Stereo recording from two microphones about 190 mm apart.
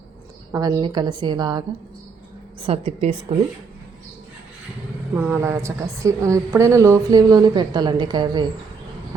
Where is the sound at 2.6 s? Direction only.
30° right (ahead or behind).